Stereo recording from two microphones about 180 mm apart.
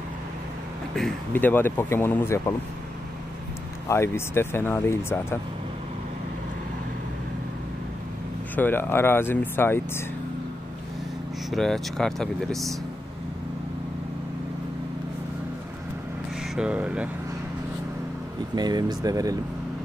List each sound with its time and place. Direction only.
1.3 s speech: 10° left (ahead or behind)
3.9 s speech: 15° left (ahead or behind)
8.5 s speech: 10° left (ahead or behind)
11.5 s speech: centre (ahead or behind)
16.5 s speech: 5° right (ahead or behind)
18.5 s speech: 20° right (ahead or behind)